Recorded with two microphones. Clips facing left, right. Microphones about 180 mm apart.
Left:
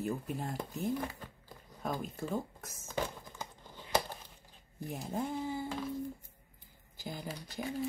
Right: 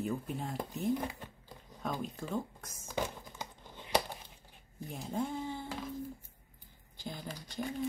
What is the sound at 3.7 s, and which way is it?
Crumpling, 15° right (ahead or behind).